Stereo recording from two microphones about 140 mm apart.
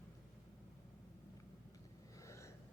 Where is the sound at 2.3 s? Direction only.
20° left (ahead or behind).